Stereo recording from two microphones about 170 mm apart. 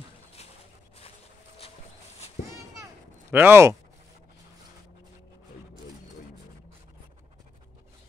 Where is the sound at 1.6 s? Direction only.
35° left (ahead or behind).